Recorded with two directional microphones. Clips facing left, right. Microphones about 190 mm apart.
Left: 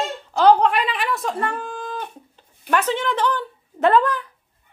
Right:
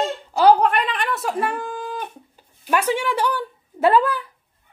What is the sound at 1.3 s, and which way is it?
Speech, 15° right (ahead or behind).